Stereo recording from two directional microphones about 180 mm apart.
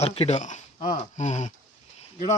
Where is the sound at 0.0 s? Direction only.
35° left (ahead or behind).